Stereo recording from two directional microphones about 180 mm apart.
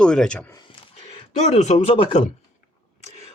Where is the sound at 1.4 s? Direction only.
40° left (ahead or behind).